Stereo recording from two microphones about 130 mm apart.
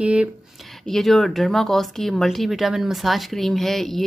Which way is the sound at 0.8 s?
Centre (ahead or behind).